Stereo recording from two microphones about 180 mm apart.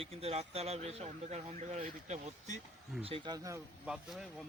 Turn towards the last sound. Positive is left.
turn(degrees=0)  # may be behind; listen again after turning